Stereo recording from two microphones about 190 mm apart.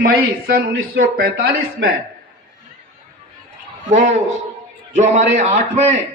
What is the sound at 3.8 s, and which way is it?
A man's voice, 40° right (ahead or behind).